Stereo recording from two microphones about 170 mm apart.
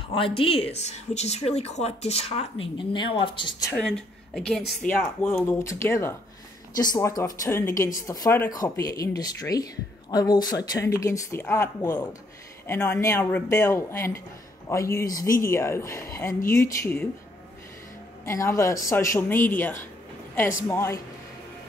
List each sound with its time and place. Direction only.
0.1 s speech: 30° left (ahead or behind)
3.7 s speech: 5° left (ahead or behind)
18.2 s speech: 15° left (ahead or behind)